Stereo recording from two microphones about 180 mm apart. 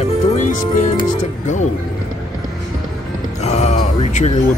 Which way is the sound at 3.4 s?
40° left (ahead or behind).